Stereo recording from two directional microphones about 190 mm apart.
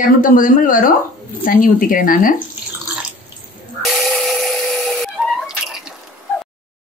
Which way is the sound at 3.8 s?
Centre (ahead or behind).